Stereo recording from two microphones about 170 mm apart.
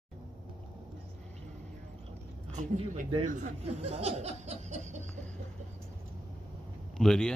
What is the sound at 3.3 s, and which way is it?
Speech, 45° right (ahead or behind).